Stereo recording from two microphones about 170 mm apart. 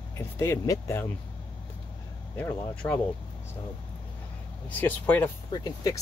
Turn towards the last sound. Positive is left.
turn(degrees=25)  # may be behind; listen again after turning